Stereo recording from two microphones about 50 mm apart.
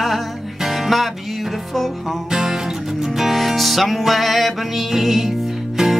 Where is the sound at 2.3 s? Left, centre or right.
Centre.